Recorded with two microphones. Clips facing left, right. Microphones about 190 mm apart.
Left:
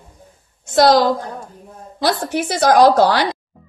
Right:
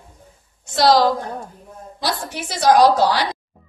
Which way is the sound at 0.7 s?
50° left (ahead or behind).